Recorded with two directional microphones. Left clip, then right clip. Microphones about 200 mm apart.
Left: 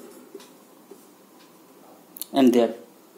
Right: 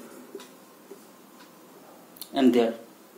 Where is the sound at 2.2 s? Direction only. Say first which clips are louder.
Left 3 dB; 55° left (ahead or behind).